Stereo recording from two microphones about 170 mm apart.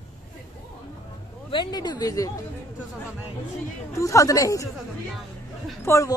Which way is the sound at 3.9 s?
20° left (ahead or behind).